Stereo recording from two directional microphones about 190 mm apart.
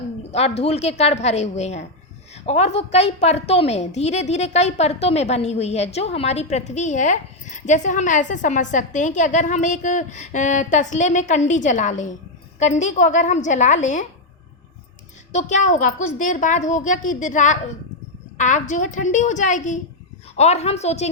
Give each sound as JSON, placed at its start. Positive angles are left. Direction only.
{"t": 0.3, "sound": "a woman's voice", "side_deg": 35}
{"t": 15.3, "sound": "a woman's voice", "side_deg": 40}